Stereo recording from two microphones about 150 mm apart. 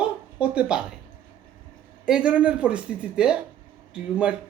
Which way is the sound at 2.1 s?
5° right (ahead or behind).